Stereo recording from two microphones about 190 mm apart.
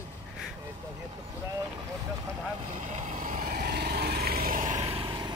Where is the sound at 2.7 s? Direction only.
40° right (ahead or behind).